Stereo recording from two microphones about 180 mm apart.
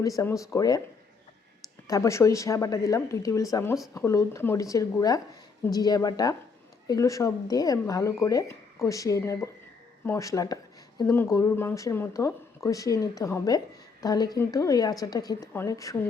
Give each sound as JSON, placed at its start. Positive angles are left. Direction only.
{"t": 0.2, "sound": "speech", "side_deg": 15}
{"t": 1.9, "sound": "speech", "side_deg": 15}